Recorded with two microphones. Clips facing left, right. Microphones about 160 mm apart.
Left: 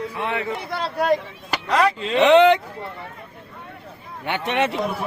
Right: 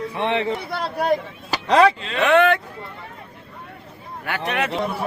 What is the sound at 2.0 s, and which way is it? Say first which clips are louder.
Speech: left 3 dB; 20° left (ahead or behind).